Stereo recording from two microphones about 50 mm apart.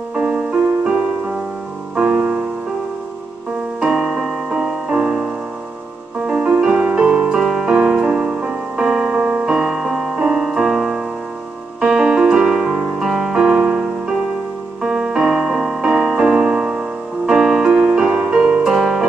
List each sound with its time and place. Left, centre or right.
0.1 s music: centre
2.0 s music: right
3.8 s music: centre
4.8 s music: centre
6.2 s music: centre
7.3 s music: centre
12.4 s music: centre